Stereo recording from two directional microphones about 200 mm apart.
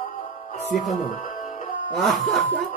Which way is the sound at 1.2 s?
40° left (ahead or behind).